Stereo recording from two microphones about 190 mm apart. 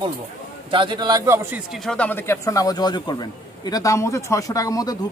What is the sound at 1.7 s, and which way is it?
A man's voice, centre (ahead or behind).